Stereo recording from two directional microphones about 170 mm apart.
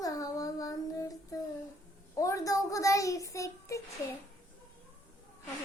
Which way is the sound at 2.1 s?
20° left (ahead or behind).